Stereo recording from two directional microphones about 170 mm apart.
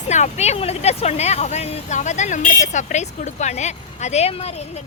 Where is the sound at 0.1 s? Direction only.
40° left (ahead or behind).